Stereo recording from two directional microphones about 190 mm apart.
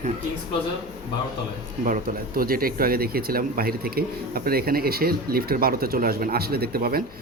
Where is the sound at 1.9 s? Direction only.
50° right (ahead or behind).